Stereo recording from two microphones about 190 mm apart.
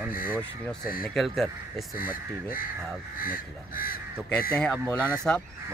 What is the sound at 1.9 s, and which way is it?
Speech, 50° left (ahead or behind).